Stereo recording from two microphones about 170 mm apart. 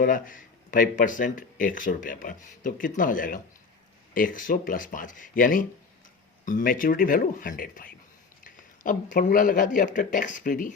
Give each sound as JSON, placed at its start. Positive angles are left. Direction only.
{"t": 0.0, "sound": "speech", "side_deg": 55}